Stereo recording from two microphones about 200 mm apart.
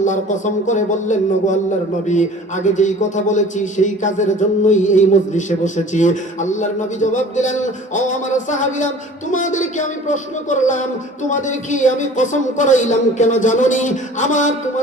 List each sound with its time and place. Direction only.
0.0 s a man's voice: 40° left (ahead or behind)
2.7 s a man's voice: 40° left (ahead or behind)